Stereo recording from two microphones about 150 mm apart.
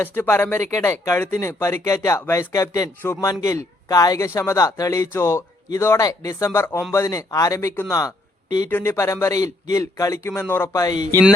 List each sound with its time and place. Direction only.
0.0 s speech: 15° left (ahead or behind)